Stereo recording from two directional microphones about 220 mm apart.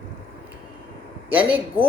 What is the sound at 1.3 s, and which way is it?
Speech, 10° right (ahead or behind).